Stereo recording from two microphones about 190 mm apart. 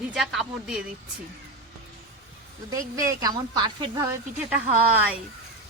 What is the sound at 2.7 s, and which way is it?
Speech, 15° right (ahead or behind).